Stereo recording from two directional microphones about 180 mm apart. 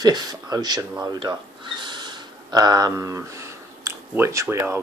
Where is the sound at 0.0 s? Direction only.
20° right (ahead or behind).